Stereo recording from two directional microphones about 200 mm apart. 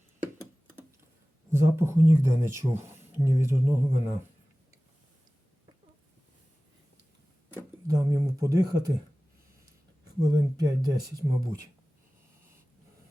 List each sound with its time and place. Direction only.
1.5 s speech: 15° right (ahead or behind)
7.5 s a sound: 15° right (ahead or behind)
10.2 s speech: 15° right (ahead or behind)